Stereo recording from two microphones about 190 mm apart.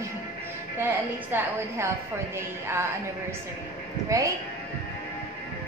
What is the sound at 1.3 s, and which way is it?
Speech, 10° right (ahead or behind).